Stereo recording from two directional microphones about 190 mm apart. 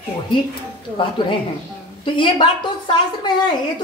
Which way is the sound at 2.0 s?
25° left (ahead or behind).